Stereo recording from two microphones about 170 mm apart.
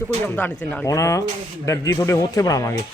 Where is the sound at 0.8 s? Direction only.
20° left (ahead or behind).